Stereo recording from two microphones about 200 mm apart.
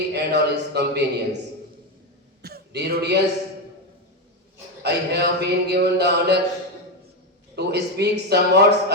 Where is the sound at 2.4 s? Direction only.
55° right (ahead or behind).